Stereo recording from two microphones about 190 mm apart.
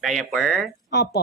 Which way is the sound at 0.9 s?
60° left (ahead or behind).